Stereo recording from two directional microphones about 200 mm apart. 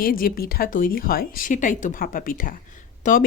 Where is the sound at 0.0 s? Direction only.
45° left (ahead or behind).